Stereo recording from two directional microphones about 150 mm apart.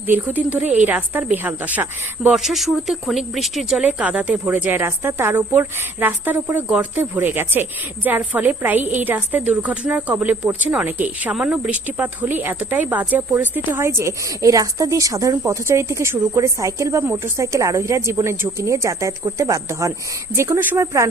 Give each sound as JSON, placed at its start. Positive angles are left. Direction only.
{"t": 0.1, "sound": "a woman's voice", "side_deg": -10}